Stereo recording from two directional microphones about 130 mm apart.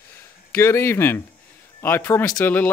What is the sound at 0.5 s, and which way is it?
Speech, 20° left (ahead or behind).